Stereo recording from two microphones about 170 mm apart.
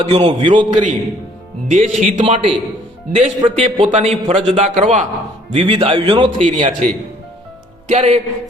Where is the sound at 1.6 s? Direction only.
45° right (ahead or behind).